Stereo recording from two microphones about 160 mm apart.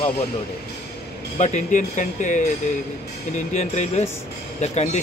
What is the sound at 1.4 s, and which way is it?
Speech, 50° left (ahead or behind).